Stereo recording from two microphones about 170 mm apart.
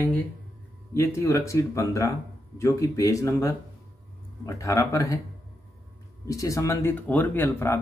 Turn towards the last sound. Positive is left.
turn(degrees=15)  # may be behind; listen again after turning